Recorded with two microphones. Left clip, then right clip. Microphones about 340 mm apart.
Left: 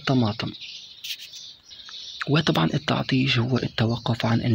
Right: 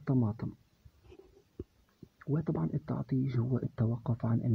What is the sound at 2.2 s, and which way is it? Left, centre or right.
Speech, right.